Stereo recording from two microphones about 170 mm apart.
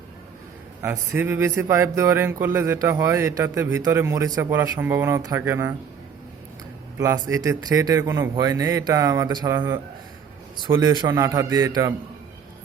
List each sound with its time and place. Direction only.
0.8 s speech: 15° right (ahead or behind)
7.0 s a man's voice: 15° right (ahead or behind)